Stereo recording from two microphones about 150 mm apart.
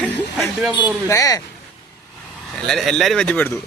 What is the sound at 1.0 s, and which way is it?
Speech, 25° left (ahead or behind).